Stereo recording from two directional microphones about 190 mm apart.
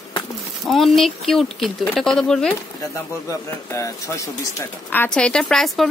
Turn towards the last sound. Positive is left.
turn(degrees=0)  # may be behind; listen again after turning